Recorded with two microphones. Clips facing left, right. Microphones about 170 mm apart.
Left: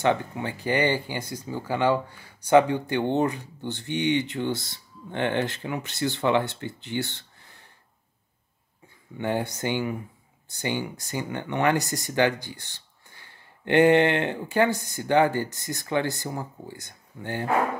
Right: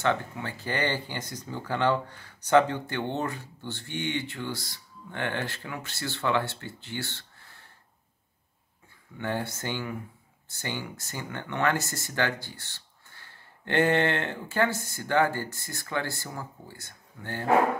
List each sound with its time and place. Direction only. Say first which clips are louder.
0.0 s speech: left 4 dB; 15° left (ahead or behind)
9.2 s speech: left 5 dB; 15° left (ahead or behind)